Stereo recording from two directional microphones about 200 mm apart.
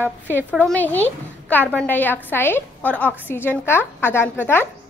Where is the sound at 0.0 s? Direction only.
10° right (ahead or behind).